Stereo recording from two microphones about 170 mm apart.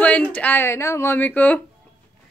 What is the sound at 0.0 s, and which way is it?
A woman's voice, 10° left (ahead or behind).